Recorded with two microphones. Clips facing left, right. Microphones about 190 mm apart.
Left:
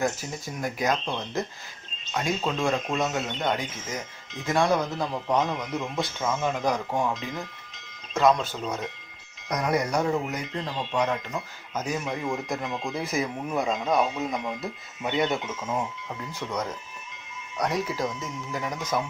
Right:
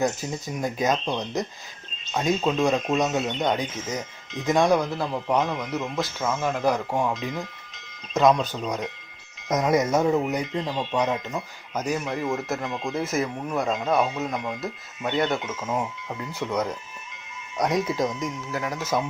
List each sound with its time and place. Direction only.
0.0 s speech: 20° right (ahead or behind)
17.6 s speech: 20° right (ahead or behind)
18.5 s speech: 5° right (ahead or behind)